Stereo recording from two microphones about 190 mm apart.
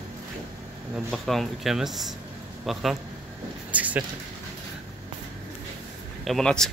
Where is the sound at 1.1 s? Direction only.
Centre (ahead or behind).